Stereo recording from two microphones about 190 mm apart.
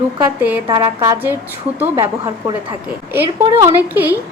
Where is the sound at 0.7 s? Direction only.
20° right (ahead or behind).